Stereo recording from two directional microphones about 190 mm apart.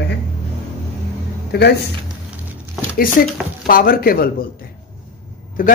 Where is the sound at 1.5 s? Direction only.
60° left (ahead or behind).